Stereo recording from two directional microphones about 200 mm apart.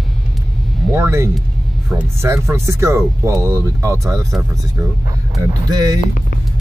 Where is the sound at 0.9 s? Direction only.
15° right (ahead or behind).